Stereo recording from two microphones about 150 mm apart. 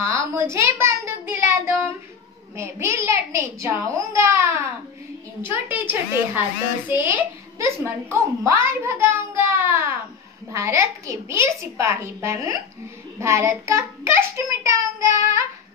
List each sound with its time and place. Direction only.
0.0 s a sound: 20° right (ahead or behind)
2.5 s a child's voice: 20° right (ahead or behind)
10.5 s a child's voice: 20° right (ahead or behind)